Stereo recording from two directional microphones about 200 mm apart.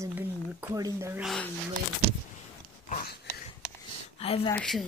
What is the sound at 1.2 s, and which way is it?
Speech, centre (ahead or behind).